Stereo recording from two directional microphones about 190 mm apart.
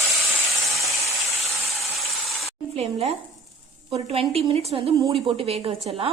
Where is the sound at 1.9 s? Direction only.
Centre (ahead or behind).